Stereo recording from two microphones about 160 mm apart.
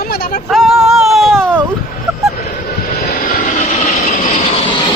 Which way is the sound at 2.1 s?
20° right (ahead or behind).